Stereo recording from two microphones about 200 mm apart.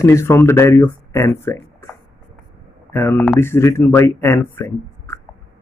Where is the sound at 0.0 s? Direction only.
10° left (ahead or behind).